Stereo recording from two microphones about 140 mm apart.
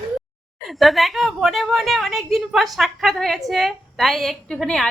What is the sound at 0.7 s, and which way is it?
A woman's voice, centre (ahead or behind).